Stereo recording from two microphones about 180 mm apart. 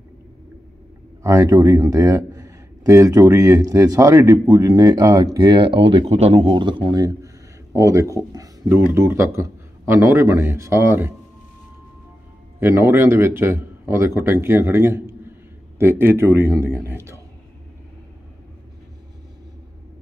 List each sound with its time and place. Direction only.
1.2 s a man's voice: 20° right (ahead or behind)
12.5 s speech: 15° right (ahead or behind)